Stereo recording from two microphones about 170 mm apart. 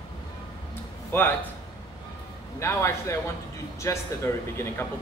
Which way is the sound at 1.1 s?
15° left (ahead or behind).